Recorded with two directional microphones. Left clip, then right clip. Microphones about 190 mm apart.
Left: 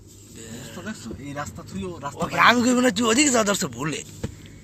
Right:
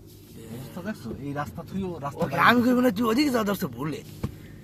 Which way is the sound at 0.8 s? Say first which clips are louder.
Right 3 dB; 55° right (ahead or behind).